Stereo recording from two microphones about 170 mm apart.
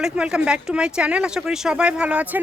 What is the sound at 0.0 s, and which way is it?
Speech, 5° right (ahead or behind).